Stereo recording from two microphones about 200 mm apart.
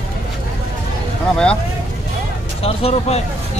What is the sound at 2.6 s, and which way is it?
Speech, 30° left (ahead or behind).